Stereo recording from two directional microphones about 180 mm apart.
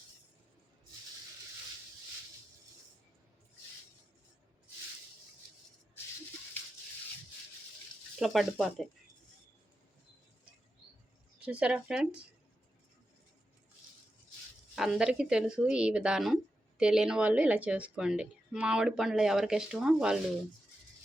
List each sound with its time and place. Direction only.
8.2 s a woman's voice: centre (ahead or behind)
11.3 s speech: 5° right (ahead or behind)
14.8 s a woman's voice: 5° right (ahead or behind)